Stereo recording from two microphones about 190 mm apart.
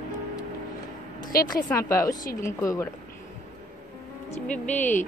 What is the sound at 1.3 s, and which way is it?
Speech, 50° left (ahead or behind).